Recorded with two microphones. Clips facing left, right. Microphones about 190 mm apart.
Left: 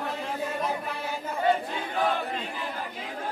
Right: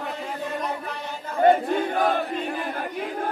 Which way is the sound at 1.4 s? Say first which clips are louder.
Right 8 dB; 55° right (ahead or behind).